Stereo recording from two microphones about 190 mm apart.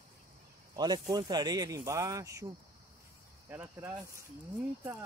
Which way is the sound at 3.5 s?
10° right (ahead or behind).